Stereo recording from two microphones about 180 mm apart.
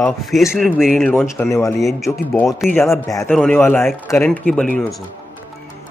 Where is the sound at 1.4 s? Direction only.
15° left (ahead or behind).